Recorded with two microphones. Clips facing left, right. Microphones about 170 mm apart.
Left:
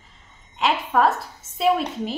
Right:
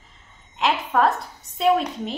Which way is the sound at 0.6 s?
Centre (ahead or behind).